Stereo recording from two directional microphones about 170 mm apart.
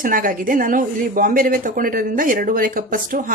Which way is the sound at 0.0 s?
55° right (ahead or behind).